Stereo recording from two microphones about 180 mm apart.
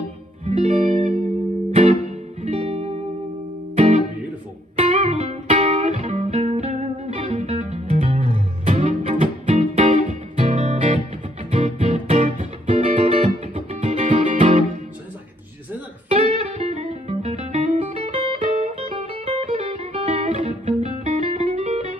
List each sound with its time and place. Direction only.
0.5 s music: 40° right (ahead or behind)
16.1 s music: 35° right (ahead or behind)